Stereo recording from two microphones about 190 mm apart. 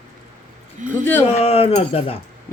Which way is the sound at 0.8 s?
40° right (ahead or behind).